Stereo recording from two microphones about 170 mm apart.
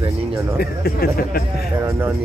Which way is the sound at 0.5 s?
65° left (ahead or behind).